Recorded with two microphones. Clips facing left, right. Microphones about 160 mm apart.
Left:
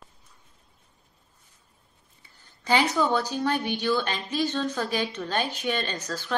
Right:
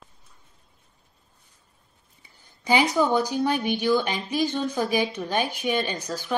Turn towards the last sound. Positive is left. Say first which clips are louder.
# right 2 dB
turn(degrees=-15)  # may be behind; listen again after turning